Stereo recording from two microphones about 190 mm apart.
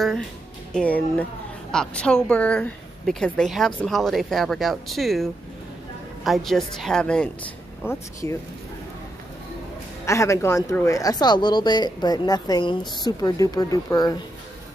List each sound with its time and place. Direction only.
0.7 s a woman's voice: 5° left (ahead or behind)
10.0 s speech: 15° left (ahead or behind)